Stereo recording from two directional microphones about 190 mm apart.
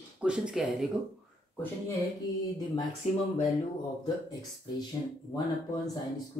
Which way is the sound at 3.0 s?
35° left (ahead or behind).